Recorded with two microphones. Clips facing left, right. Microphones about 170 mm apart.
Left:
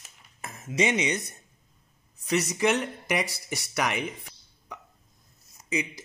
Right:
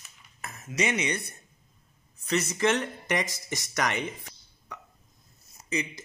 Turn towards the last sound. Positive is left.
turn(degrees=15)  # may be behind; listen again after turning